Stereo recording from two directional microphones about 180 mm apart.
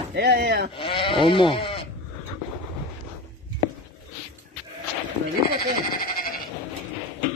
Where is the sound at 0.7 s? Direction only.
30° left (ahead or behind).